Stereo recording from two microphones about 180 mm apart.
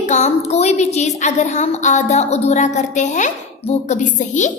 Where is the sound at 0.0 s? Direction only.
40° left (ahead or behind).